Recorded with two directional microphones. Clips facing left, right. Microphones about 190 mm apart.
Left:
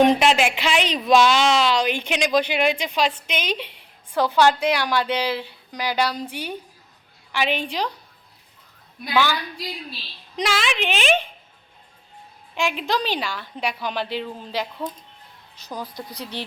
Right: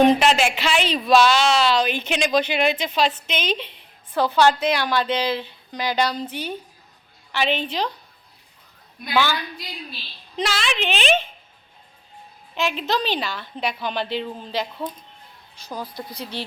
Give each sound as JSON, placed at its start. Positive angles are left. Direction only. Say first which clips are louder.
{"t": 0.0, "sound": "a woman's voice", "louder": "even", "side_deg": 15}
{"t": 10.3, "sound": "a woman's voice", "louder": "left 1 dB", "side_deg": 10}
{"t": 12.5, "sound": "a woman's voice", "louder": "even", "side_deg": 15}
{"t": 15.8, "sound": "speech", "louder": "right 1 dB", "side_deg": -10}
{"t": 16.3, "sound": "a woman's voice", "louder": "right 1 dB", "side_deg": 15}